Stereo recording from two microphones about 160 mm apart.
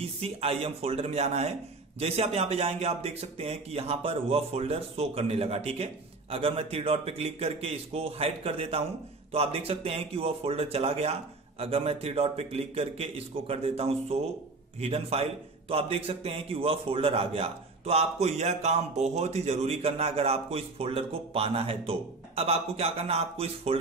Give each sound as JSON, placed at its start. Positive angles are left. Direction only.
{"t": 0.0, "sound": "a man's voice", "side_deg": -35}